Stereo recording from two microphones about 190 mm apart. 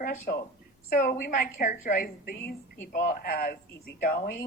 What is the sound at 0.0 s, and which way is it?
A woman's voice, 45° left (ahead or behind).